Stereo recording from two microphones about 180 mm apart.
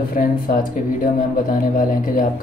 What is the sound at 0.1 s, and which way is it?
Speech, 50° left (ahead or behind).